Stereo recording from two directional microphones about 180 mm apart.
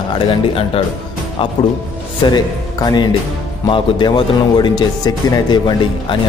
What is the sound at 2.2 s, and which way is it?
Speech, 25° left (ahead or behind).